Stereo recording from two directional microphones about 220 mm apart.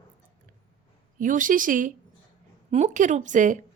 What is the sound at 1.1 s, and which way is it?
A woman's voice, 35° right (ahead or behind).